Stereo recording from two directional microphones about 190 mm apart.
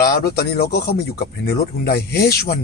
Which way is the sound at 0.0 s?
55° left (ahead or behind).